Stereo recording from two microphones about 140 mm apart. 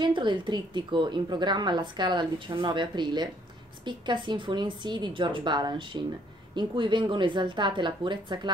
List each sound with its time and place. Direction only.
0.0 s a woman's voice: 35° right (ahead or behind)